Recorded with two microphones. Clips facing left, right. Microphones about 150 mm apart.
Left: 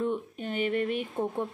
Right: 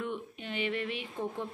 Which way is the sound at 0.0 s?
40° left (ahead or behind).